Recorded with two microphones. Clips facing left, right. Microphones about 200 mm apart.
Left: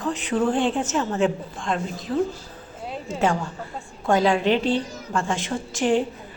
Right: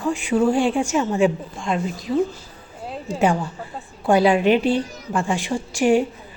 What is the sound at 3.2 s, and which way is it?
A woman's voice, 15° right (ahead or behind).